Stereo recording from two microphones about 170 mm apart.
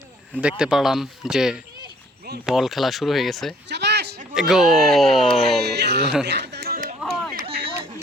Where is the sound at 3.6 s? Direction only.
85° right.